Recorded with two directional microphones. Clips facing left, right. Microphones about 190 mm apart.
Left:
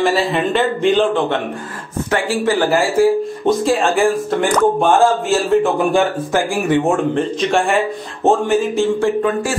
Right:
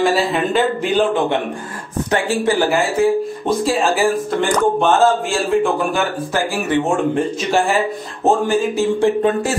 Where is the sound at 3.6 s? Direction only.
Centre (ahead or behind).